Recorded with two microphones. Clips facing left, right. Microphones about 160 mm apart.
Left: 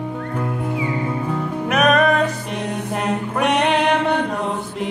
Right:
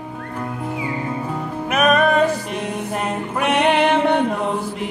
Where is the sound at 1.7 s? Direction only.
Centre (ahead or behind).